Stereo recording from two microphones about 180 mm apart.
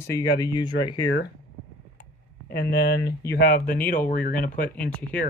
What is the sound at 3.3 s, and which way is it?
Speech, 55° left (ahead or behind).